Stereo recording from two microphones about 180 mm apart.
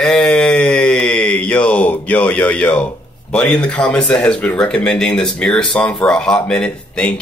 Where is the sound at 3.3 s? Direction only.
5° left (ahead or behind).